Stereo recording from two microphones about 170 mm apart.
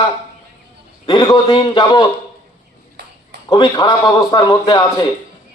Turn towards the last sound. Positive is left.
turn(degrees=20)  # may be behind; listen again after turning